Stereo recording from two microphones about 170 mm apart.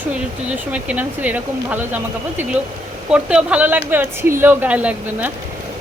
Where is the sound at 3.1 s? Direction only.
5° right (ahead or behind).